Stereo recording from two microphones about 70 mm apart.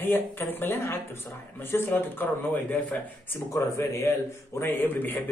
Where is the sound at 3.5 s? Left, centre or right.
Left.